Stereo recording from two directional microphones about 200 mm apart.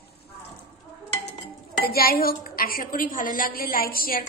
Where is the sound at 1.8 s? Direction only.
50° left (ahead or behind).